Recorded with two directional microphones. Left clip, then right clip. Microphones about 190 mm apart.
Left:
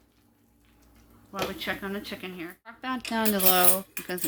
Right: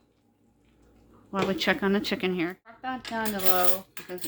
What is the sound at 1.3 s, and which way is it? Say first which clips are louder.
Speech: right 5 dB; 45° right (ahead or behind).